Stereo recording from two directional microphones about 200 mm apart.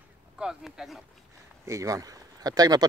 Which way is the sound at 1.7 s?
15° right (ahead or behind).